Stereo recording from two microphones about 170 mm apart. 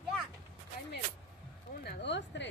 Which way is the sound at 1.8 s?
90° left.